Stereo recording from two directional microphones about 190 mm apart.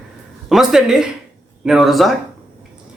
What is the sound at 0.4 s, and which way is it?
Speech, centre (ahead or behind).